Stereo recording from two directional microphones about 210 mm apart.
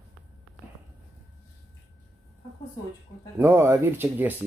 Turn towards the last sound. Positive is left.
turn(degrees=-10)  # may be behind; listen again after turning